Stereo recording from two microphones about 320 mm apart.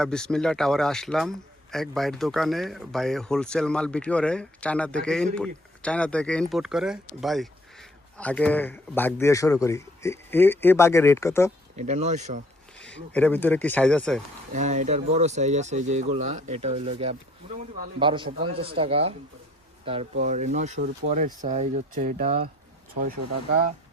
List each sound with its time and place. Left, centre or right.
0.0 s a man's voice: centre
11.8 s speech: right
12.8 s a man's voice: centre
14.5 s a man's voice: right